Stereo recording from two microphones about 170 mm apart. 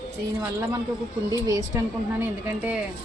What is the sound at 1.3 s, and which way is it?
A woman's voice, 20° right (ahead or behind).